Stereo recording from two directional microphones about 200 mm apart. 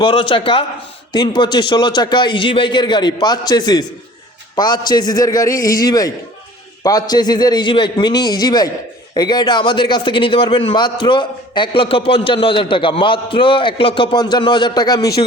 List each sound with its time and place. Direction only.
0.0 s a man's voice: 25° left (ahead or behind)